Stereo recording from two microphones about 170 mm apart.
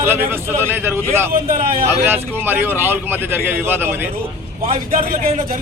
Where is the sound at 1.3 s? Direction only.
55° right (ahead or behind).